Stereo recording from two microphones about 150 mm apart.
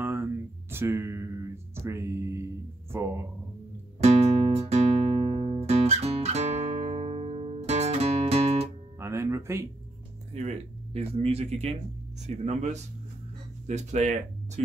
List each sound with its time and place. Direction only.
0.0 s a sound: 15° right (ahead or behind)
1.9 s music: 20° right (ahead or behind)
2.9 s speech: 20° right (ahead or behind)
4.0 s music: 45° right (ahead or behind)
9.0 s music: 20° right (ahead or behind)
10.3 s speech: 45° right (ahead or behind)